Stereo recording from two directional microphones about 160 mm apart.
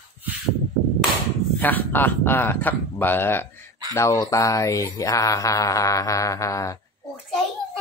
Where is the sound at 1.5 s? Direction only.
10° left (ahead or behind).